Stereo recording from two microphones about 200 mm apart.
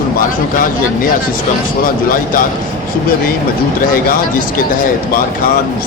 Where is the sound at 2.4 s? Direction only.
45° left (ahead or behind).